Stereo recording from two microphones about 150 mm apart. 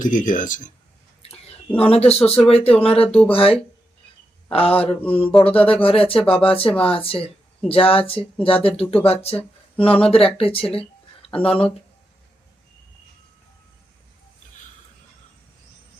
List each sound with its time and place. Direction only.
0.0 s speech: 60° left (ahead or behind)
1.3 s speech: 40° left (ahead or behind)
4.9 s a sound: 10° left (ahead or behind)
5.3 s speech: 40° left (ahead or behind)